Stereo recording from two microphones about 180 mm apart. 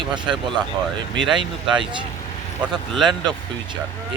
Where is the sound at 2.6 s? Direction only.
Centre (ahead or behind).